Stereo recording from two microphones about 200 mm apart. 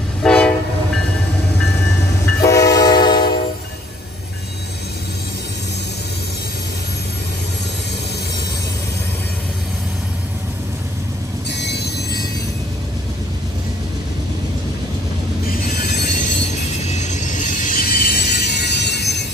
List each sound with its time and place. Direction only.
0.2 s train: 5° left (ahead or behind)
2.4 s train: 15° left (ahead or behind)
11.5 s train: 55° left (ahead or behind)
15.7 s music: 50° left (ahead or behind)
16.8 s music: 35° left (ahead or behind); by 19.2 s 55° left (ahead or behind)